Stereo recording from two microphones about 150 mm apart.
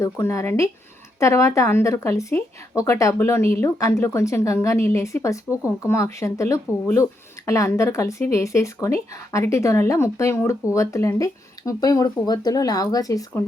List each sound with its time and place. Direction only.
0.0 s speech: 20° left (ahead or behind)